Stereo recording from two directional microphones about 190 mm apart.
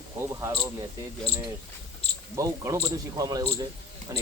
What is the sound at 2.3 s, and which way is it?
Speech, 15° right (ahead or behind).